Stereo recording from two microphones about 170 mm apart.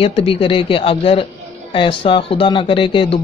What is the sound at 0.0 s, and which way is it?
Speech, 35° left (ahead or behind).